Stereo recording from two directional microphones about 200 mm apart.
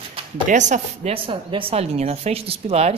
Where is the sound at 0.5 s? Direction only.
40° right (ahead or behind).